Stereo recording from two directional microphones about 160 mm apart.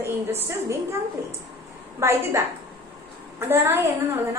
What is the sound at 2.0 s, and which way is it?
Speech, 15° right (ahead or behind).